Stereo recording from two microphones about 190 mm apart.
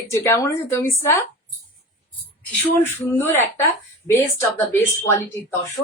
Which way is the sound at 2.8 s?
10° left (ahead or behind).